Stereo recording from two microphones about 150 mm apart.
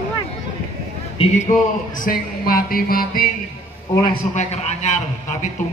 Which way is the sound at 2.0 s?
70° left (ahead or behind).